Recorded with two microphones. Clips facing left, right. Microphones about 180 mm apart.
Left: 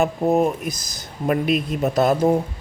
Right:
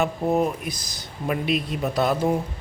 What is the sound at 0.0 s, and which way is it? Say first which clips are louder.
Speech: left 4 dB; 45° left (ahead or behind).